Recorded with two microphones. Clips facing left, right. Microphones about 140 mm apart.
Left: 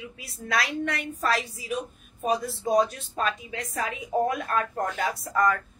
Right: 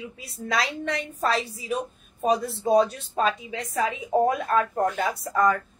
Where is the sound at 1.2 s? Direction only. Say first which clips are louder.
Right 2 dB; 30° right (ahead or behind).